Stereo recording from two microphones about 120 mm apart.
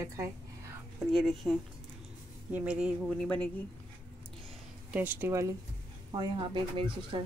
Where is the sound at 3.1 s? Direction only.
10° left (ahead or behind).